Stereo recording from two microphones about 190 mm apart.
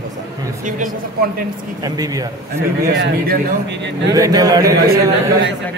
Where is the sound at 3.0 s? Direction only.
50° right (ahead or behind).